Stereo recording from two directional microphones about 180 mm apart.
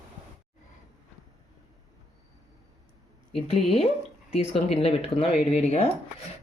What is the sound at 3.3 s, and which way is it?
Speech, centre (ahead or behind).